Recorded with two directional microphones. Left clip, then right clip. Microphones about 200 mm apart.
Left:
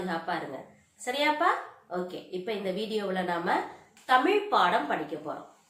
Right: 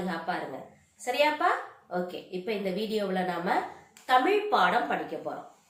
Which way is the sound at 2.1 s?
10° left (ahead or behind).